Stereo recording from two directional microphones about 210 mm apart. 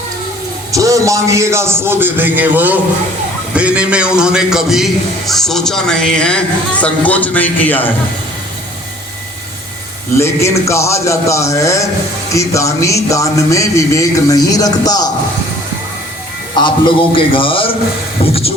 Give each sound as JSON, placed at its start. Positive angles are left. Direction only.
{"t": 0.7, "sound": "a man's voice", "side_deg": -15}
{"t": 10.2, "sound": "speech", "side_deg": 15}
{"t": 16.6, "sound": "a man's voice", "side_deg": 20}